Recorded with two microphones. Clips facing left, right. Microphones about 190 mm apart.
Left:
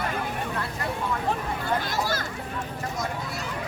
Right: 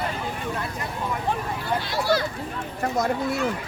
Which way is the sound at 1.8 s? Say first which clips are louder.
Right 5 dB; 45° left (ahead or behind).